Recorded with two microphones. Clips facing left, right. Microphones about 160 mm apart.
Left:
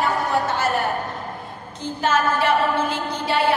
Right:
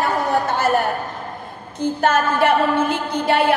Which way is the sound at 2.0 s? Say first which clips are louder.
Right 2 dB; 55° right (ahead or behind).